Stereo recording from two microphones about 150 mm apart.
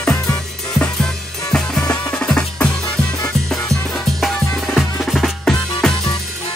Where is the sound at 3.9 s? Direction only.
Centre (ahead or behind).